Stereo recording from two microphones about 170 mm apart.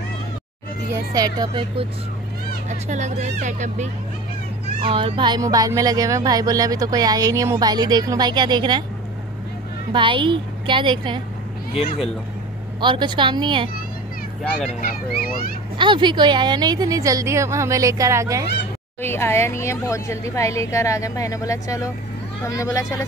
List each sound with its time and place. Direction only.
0.9 s speech: 20° right (ahead or behind)
2.9 s speech: 45° right (ahead or behind)
4.8 s speech: 30° right (ahead or behind)
9.9 s speech: 30° right (ahead or behind)
11.7 s speech: 35° left (ahead or behind)
12.8 s speech: 30° right (ahead or behind)
14.8 s a child's voice: 60° left (ahead or behind)
15.8 s speech: 30° right (ahead or behind)
18.9 s a woman's voice: 15° left (ahead or behind)